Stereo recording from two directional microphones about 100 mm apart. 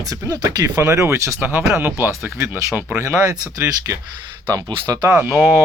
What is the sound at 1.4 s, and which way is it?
Speech, 15° right (ahead or behind).